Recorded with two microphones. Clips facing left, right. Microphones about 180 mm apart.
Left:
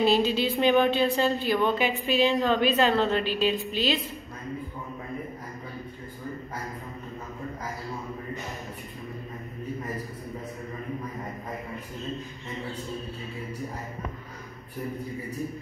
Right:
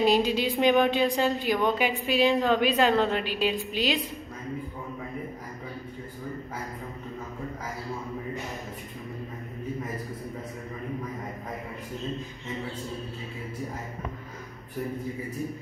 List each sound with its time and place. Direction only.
0.0 s speech: 15° right (ahead or behind)